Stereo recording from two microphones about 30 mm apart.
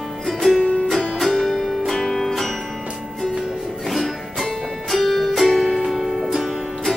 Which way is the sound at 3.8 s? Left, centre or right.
Centre.